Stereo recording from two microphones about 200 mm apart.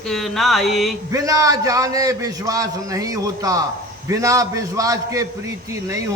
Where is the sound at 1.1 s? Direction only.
15° right (ahead or behind).